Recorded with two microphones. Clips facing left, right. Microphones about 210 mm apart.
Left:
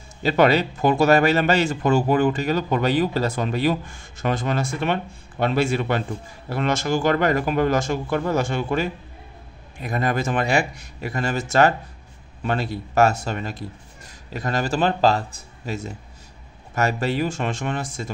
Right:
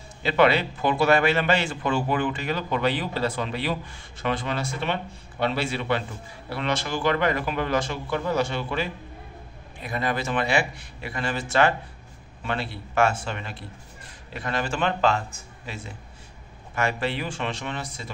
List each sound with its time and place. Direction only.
0.2 s a man's voice: 40° left (ahead or behind)